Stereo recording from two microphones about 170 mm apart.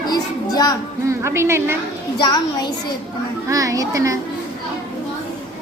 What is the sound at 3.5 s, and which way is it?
Speech, 20° right (ahead or behind).